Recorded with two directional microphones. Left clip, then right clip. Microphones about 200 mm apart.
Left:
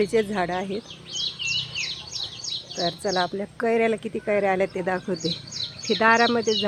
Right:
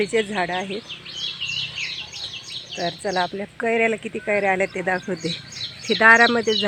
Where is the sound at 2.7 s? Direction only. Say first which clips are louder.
Right 1 dB; 10° right (ahead or behind).